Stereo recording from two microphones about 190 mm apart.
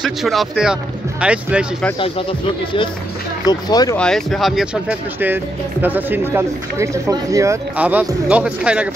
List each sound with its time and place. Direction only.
0.0 s speech: centre (ahead or behind)
2.0 s speech: 30° left (ahead or behind)
3.9 s speech: 5° left (ahead or behind)